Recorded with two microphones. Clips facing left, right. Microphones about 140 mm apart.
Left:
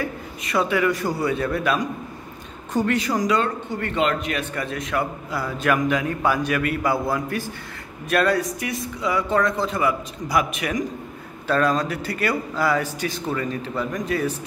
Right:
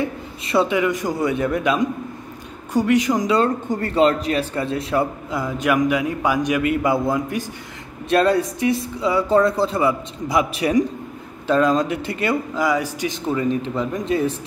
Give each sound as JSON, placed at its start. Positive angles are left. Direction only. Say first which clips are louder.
{"t": 0.0, "sound": "a man's voice", "louder": "right 3 dB", "side_deg": -25}
{"t": 3.3, "sound": "a man's voice", "louder": "right 5 dB", "side_deg": -40}
{"t": 11.4, "sound": "a man's voice", "louder": "right 3 dB", "side_deg": -20}